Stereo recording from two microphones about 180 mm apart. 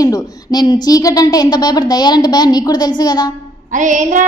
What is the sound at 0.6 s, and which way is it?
A woman's voice, 20° left (ahead or behind).